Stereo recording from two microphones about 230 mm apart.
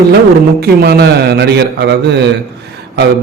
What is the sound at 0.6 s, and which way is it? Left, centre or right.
Speech, right.